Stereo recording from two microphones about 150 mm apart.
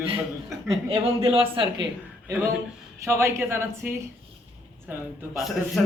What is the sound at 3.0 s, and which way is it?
Speech, 15° right (ahead or behind).